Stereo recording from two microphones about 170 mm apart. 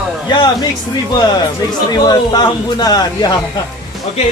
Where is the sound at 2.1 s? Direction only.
25° left (ahead or behind).